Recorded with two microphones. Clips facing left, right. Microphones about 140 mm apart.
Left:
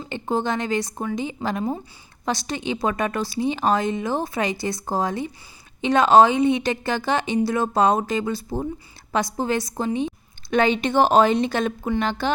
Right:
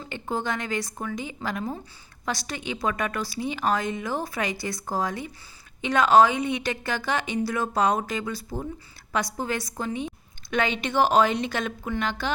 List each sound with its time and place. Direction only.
0.1 s a woman's voice: 25° left (ahead or behind)